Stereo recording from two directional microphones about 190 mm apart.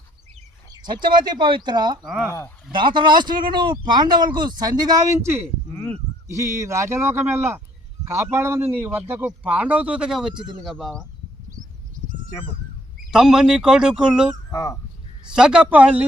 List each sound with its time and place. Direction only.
0.7 s speech: 25° right (ahead or behind)
2.0 s speech: 5° right (ahead or behind)
2.7 s speech: 25° right (ahead or behind)
5.7 s a sound: 10° left (ahead or behind)
6.2 s a man's voice: 15° right (ahead or behind)
10.3 s speech: 25° right (ahead or behind)
10.6 s speech: centre (ahead or behind)
13.1 s speech: 5° right (ahead or behind)
14.5 s speech: 15° left (ahead or behind)
15.3 s speech: 5° right (ahead or behind)